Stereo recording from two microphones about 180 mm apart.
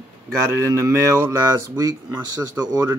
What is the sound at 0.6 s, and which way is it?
Speech, 15° right (ahead or behind).